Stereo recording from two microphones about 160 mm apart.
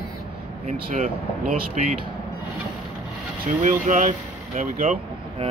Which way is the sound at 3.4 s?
45° right (ahead or behind).